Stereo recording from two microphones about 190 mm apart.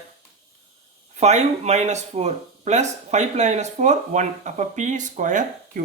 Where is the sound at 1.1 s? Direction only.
35° right (ahead or behind).